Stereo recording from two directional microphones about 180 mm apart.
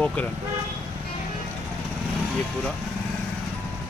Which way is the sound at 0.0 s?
10° left (ahead or behind).